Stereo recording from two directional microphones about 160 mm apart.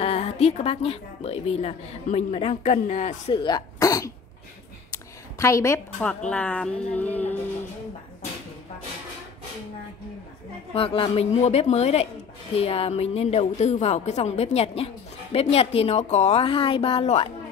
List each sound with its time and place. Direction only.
0.0 s speech: 40° left (ahead or behind)
3.3 s speech: 25° left (ahead or behind)
4.9 s a sound: 20° left (ahead or behind)
5.9 s speech: 5° left (ahead or behind)
10.7 s a woman's voice: 35° left (ahead or behind)